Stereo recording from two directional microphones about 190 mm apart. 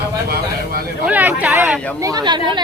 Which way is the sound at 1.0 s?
10° right (ahead or behind).